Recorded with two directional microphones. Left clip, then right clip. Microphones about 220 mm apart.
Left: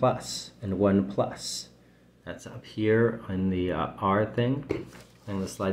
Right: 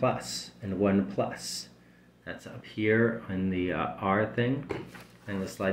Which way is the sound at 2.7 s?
20° left (ahead or behind).